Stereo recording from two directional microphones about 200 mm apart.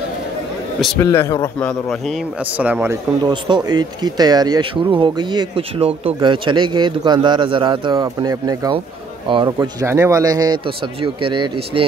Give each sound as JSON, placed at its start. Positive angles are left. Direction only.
{"t": 0.9, "sound": "speech", "side_deg": 15}
{"t": 3.3, "sound": "speech", "side_deg": -20}